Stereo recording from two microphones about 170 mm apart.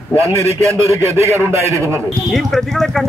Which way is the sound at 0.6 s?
15° right (ahead or behind).